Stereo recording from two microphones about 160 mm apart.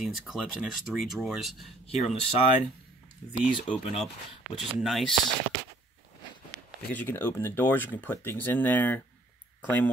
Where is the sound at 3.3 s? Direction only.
40° left (ahead or behind).